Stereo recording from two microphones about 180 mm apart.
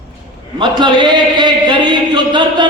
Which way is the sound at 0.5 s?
25° right (ahead or behind).